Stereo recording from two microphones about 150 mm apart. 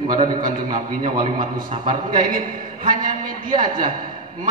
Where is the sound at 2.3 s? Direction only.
65° right (ahead or behind).